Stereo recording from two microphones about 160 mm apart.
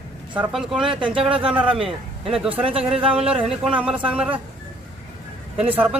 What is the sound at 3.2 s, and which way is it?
Speech, 5° right (ahead or behind).